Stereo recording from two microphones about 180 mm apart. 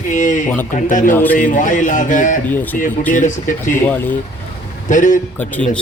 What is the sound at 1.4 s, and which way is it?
Speech, 45° left (ahead or behind).